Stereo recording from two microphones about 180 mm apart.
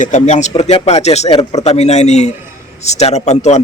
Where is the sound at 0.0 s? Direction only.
40° left (ahead or behind).